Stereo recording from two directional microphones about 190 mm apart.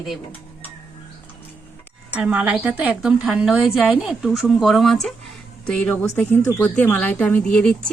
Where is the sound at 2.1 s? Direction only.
5° right (ahead or behind).